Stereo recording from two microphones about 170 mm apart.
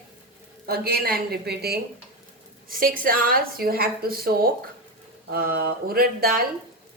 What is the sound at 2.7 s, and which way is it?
Speech, 55° right (ahead or behind).